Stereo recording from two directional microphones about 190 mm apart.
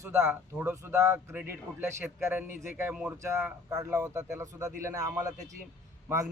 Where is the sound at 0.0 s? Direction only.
5° right (ahead or behind).